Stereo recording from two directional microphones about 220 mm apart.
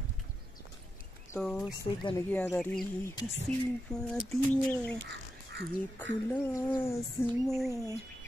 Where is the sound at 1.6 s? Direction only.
20° left (ahead or behind); by 4.0 s 5° left (ahead or behind).